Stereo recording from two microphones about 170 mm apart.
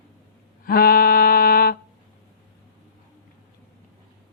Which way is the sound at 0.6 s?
60° left (ahead or behind).